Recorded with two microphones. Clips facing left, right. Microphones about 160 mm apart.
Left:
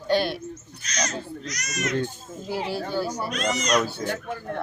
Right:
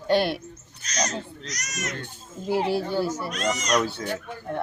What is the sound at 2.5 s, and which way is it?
Speech, 60° right (ahead or behind).